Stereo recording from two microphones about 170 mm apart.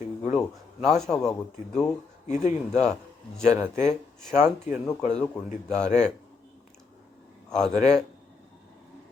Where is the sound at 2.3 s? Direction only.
45° left (ahead or behind).